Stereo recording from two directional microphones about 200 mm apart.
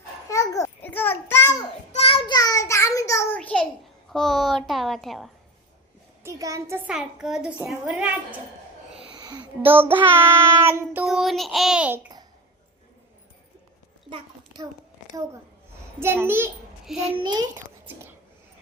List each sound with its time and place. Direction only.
0.3 s a sound: 15° left (ahead or behind)
1.9 s child singing: 30° left (ahead or behind); by 3.7 s 5° left (ahead or behind)
4.1 s a child's voice: centre (ahead or behind)
6.2 s child singing: 15° right (ahead or behind)
6.9 s a child's voice: 5° right (ahead or behind)
9.0 s wheeze: 25° right (ahead or behind)
9.6 s child singing: 10° right (ahead or behind)
11.0 s a child's voice: centre (ahead or behind)
14.1 s a sound: 20° right (ahead or behind)
16.0 s a child's voice: 10° right (ahead or behind)
17.2 s a child's voice: 20° right (ahead or behind)